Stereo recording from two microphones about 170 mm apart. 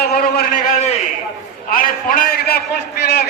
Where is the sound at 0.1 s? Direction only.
60° left (ahead or behind).